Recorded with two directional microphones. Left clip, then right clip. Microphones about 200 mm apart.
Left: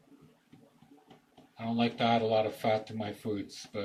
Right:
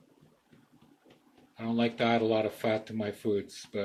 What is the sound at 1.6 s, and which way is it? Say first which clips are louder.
Speech: right 1 dB; 55° right (ahead or behind).